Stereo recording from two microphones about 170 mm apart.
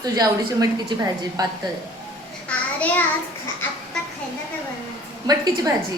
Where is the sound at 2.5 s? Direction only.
10° left (ahead or behind).